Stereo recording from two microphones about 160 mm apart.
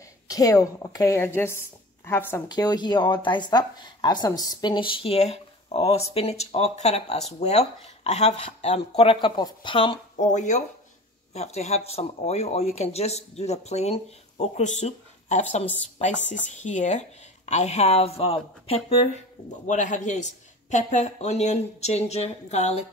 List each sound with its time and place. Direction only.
0.3 s a woman's voice: 20° left (ahead or behind)
2.4 s speech: 25° left (ahead or behind)
10.1 s a woman's voice: 50° left (ahead or behind)
19.6 s a woman's voice: 50° left (ahead or behind)